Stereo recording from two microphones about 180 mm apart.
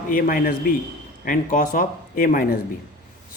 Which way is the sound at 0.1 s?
50° left (ahead or behind).